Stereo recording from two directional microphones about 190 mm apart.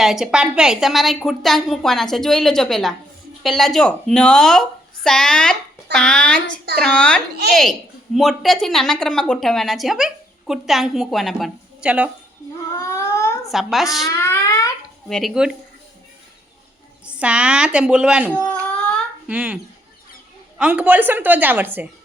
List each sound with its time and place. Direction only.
0.0 s a woman's voice: centre (ahead or behind)
12.7 s a sound: 15° left (ahead or behind)
13.5 s a woman's voice: centre (ahead or behind)
14.1 s a sound: 15° left (ahead or behind)
15.1 s a woman's voice: centre (ahead or behind)
17.1 s a woman's voice: 5° right (ahead or behind)
18.3 s speech: 10° left (ahead or behind)
19.3 s a woman's voice: 5° right (ahead or behind)
20.6 s a woman's voice: 5° right (ahead or behind)